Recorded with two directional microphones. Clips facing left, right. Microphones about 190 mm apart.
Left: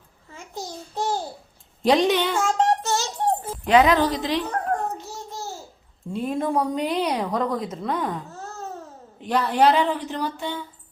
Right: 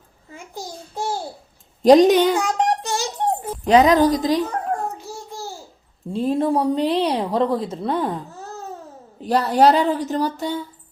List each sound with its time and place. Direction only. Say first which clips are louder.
0.5 s a child's voice: even; 10° right (ahead or behind)
1.8 s speech: right 7 dB; 40° right (ahead or behind)
2.3 s child singing: right 1 dB; 15° right (ahead or behind)
3.7 s speech: right 4 dB; 40° right (ahead or behind)
6.1 s speech: right 5 dB; 30° right (ahead or behind)
9.2 s speech: right 4 dB; 40° right (ahead or behind)